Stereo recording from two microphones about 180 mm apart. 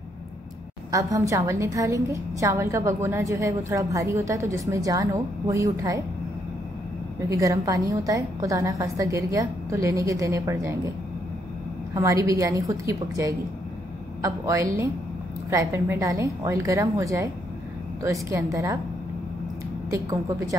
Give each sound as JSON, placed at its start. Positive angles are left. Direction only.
{"t": 0.9, "sound": "a woman's voice", "side_deg": -15}
{"t": 7.2, "sound": "a woman's voice", "side_deg": -15}
{"t": 11.9, "sound": "a woman's voice", "side_deg": -15}
{"t": 19.9, "sound": "a woman's voice", "side_deg": -20}